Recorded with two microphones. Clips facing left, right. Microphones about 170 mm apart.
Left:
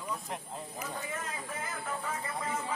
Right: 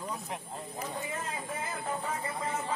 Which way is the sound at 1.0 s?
30° right (ahead or behind).